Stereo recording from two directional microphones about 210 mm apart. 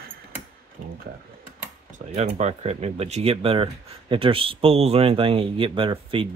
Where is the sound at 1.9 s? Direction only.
35° right (ahead or behind).